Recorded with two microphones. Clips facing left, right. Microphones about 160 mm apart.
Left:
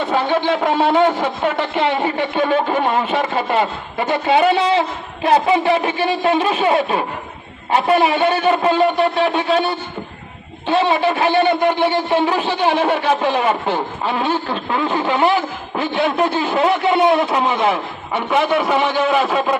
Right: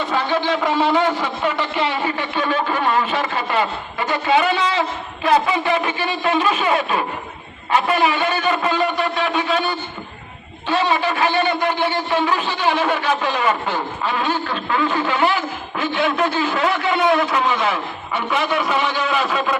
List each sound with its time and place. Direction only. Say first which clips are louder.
0.1 s a man's voice: left 3 dB; 25° left (ahead or behind)
0.6 s a man's voice: left 3 dB; 55° left (ahead or behind)
2.0 s a man's voice: left 4 dB; 25° left (ahead or behind)
12.4 s a man's voice: left 4 dB; 55° left (ahead or behind)
12.6 s a man's voice: left 3 dB; 30° left (ahead or behind)